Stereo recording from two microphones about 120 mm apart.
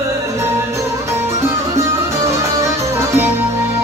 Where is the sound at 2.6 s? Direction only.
25° right (ahead or behind).